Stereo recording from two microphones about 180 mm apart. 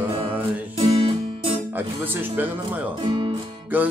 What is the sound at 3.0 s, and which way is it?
Music, 25° right (ahead or behind).